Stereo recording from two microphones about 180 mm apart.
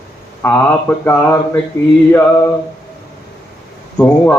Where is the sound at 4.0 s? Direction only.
5° left (ahead or behind).